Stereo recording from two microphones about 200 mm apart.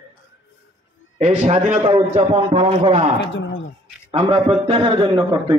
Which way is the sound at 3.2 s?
70° left (ahead or behind).